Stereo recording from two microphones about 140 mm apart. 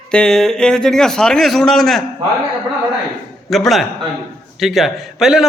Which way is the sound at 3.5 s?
Centre (ahead or behind).